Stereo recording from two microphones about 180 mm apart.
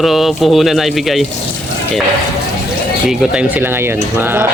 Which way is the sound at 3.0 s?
5° right (ahead or behind).